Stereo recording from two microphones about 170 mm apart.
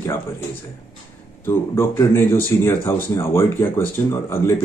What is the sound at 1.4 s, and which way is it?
Speech, 15° left (ahead or behind).